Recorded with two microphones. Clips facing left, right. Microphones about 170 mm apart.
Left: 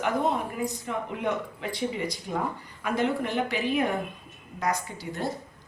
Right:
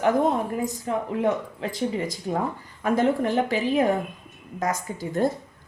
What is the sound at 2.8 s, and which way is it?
A woman's voice, 45° right (ahead or behind).